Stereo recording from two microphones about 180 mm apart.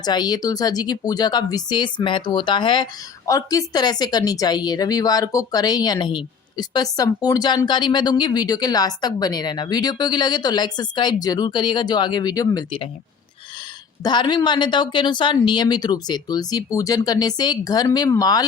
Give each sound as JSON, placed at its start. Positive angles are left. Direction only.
{"t": 0.0, "sound": "speech", "side_deg": 25}
{"t": 14.0, "sound": "speech", "side_deg": 25}